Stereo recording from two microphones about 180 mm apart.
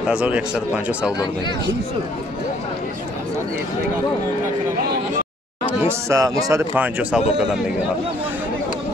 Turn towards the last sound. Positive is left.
turn(degrees=-10)  # may be behind; listen again after turning